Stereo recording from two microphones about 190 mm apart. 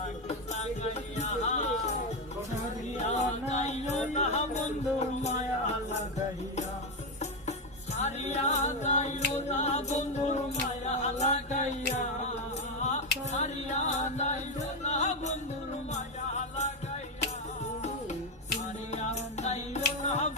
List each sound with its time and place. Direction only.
0.0 s music: 35° left (ahead or behind)
3.0 s music: 35° left (ahead or behind)
7.9 s music: 35° left (ahead or behind)
12.8 s music: 35° left (ahead or behind)
19.4 s music: 35° left (ahead or behind)